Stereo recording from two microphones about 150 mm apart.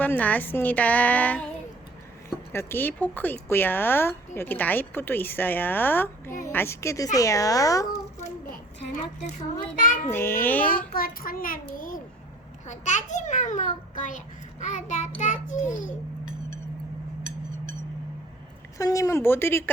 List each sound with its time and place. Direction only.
0.0 s speech: 10° left (ahead or behind)
2.5 s speech: 15° left (ahead or behind)
9.7 s child singing: 60° left (ahead or behind)
10.1 s speech: 15° left (ahead or behind)
10.9 s a child's voice: 70° left (ahead or behind)
18.8 s speech: 20° left (ahead or behind)